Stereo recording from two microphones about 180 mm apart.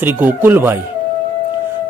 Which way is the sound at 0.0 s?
10° right (ahead or behind).